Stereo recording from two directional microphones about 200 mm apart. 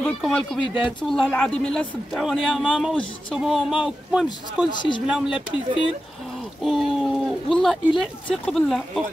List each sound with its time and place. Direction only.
0.2 s a man's voice: 5° left (ahead or behind)
4.7 s speech: 25° left (ahead or behind)
5.0 s a man's voice: 5° right (ahead or behind)
6.6 s a man's voice: centre (ahead or behind)